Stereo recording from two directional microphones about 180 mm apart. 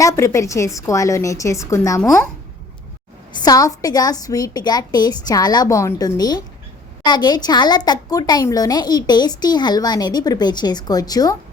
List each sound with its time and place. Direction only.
0.0 s a woman's voice: 15° left (ahead or behind)
3.3 s speech: 20° left (ahead or behind)